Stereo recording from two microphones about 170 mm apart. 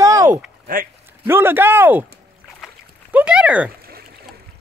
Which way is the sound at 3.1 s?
10° right (ahead or behind).